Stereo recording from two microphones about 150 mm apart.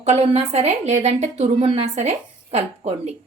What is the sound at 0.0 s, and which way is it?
A woman's voice, 45° right (ahead or behind).